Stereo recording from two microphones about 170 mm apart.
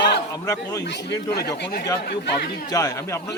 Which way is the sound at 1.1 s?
80° left.